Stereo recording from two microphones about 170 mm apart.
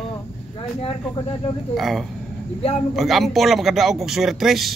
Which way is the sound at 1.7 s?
Centre (ahead or behind).